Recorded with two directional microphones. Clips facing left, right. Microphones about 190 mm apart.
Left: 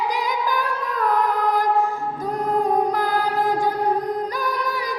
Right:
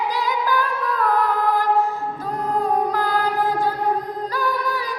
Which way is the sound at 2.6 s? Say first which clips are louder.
Even; 15° left (ahead or behind).